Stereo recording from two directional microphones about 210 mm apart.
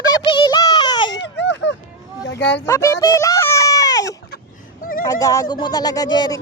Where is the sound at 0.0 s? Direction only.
20° left (ahead or behind).